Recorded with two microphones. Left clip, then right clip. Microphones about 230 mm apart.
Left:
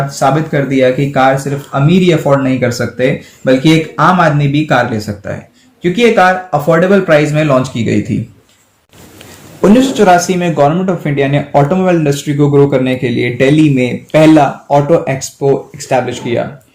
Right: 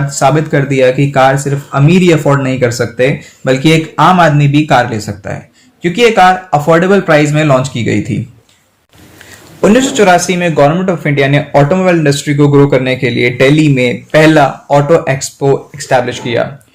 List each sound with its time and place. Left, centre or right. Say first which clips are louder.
0.1 s speech: right 4 dB; right
9.8 s speech: even; right